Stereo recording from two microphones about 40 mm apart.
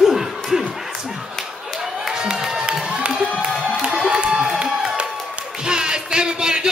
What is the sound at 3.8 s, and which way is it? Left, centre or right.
Music, right.